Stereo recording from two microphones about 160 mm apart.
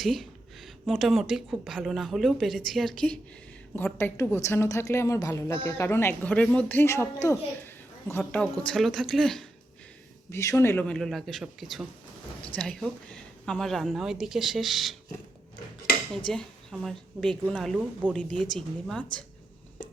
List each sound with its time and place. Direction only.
0.0 s a woman's voice: centre (ahead or behind)
10.3 s speech: 15° left (ahead or behind); by 14.9 s centre (ahead or behind)
16.3 s speech: 5° left (ahead or behind)